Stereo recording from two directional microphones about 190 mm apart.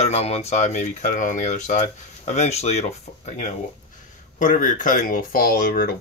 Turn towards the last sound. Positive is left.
turn(degrees=50)  # may be behind; listen again after turning